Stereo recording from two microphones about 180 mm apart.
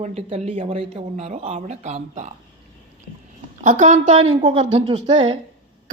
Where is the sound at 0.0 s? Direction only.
35° right (ahead or behind).